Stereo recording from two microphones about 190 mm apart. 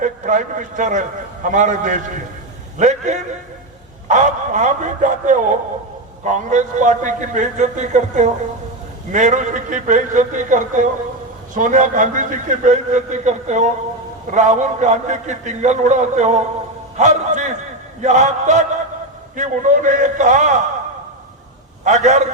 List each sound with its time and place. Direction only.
0.0 s a man's voice: 45° right (ahead or behind)
21.8 s a man's voice: 35° right (ahead or behind)